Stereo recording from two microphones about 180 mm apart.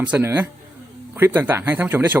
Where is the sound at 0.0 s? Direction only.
10° right (ahead or behind).